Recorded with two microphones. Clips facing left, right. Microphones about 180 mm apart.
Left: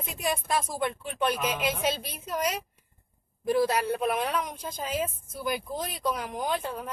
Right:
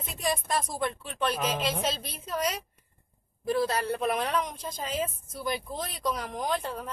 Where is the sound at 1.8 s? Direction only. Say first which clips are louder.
Left 2 dB; 10° left (ahead or behind).